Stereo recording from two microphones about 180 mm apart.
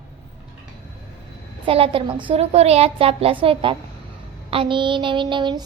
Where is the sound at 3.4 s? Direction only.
30° right (ahead or behind).